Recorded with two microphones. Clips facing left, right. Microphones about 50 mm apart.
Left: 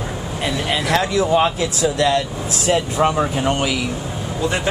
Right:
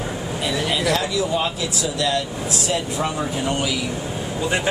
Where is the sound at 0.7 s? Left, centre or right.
Left.